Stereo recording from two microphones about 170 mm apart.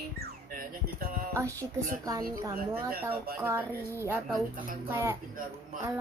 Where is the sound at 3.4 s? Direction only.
15° right (ahead or behind).